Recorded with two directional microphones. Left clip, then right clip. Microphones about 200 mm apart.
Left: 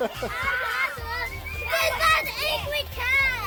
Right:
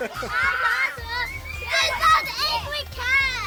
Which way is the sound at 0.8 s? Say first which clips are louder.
Right 2 dB; 55° left (ahead or behind).